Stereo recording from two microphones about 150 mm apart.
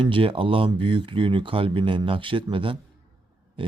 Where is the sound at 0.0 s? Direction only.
35° right (ahead or behind).